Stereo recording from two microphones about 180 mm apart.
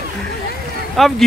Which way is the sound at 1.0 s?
Centre (ahead or behind).